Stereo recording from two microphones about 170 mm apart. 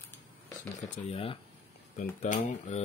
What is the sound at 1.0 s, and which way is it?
Speech, 35° left (ahead or behind).